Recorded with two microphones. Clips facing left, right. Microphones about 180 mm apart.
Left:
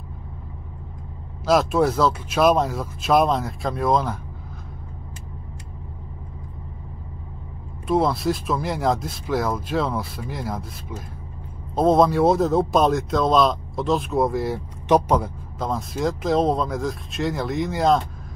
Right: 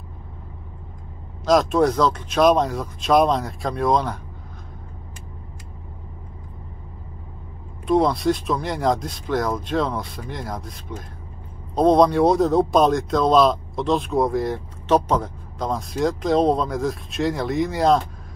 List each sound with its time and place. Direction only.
1.4 s speech: 5° left (ahead or behind)
7.8 s speech: 5° left (ahead or behind)